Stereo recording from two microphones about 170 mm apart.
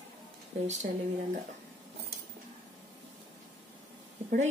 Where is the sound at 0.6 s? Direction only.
45° right (ahead or behind).